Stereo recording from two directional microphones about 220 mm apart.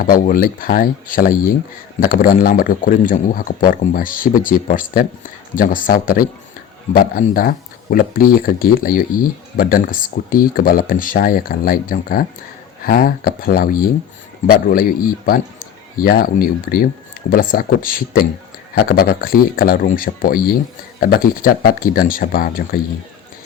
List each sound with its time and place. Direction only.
0.0 s speech: 40° left (ahead or behind)